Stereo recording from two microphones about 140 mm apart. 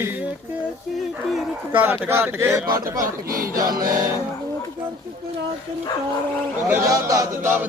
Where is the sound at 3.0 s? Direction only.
90° right.